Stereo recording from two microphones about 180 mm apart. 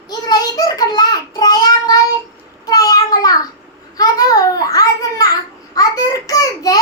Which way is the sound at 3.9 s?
20° left (ahead or behind).